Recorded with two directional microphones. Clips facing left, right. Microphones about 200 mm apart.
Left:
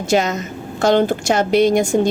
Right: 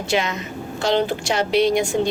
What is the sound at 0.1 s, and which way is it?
A woman's voice, 40° left (ahead or behind).